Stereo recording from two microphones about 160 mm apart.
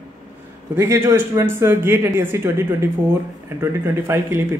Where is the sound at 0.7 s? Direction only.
15° right (ahead or behind).